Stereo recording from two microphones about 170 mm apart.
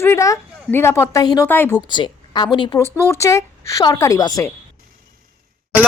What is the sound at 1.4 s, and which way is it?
Speech, 10° left (ahead or behind).